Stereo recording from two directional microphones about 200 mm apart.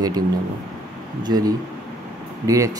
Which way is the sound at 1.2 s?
20° right (ahead or behind).